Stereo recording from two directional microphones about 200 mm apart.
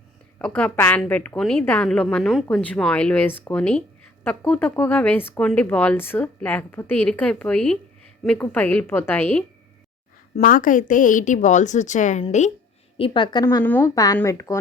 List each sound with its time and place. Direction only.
0.3 s a woman's voice: 5° left (ahead or behind)
10.3 s a woman's voice: 40° left (ahead or behind)
13.0 s a woman's voice: 25° left (ahead or behind)
13.4 s a woman's voice: 10° left (ahead or behind)